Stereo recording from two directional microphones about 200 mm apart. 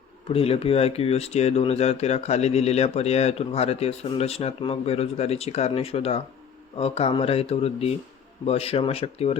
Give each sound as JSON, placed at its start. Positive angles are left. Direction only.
{"t": 0.3, "sound": "speech", "side_deg": 30}